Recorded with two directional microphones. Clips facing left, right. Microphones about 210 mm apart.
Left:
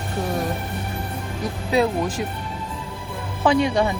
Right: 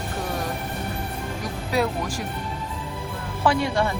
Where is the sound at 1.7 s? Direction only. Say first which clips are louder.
Left 4 dB; 20° left (ahead or behind).